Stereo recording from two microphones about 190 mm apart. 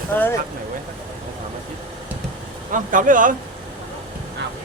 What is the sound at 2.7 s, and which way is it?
Speech, 45° right (ahead or behind).